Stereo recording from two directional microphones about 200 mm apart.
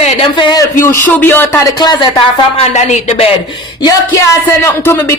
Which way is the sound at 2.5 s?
35° left (ahead or behind).